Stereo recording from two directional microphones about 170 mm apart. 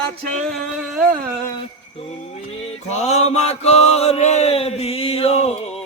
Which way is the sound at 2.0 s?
35° left (ahead or behind).